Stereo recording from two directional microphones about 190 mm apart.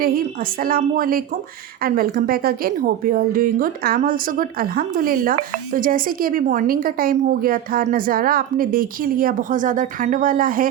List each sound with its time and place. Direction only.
0.6 s a woman's voice: 50° right (ahead or behind)